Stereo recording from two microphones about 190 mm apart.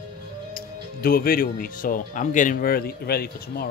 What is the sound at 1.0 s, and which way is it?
Speech, 50° left (ahead or behind).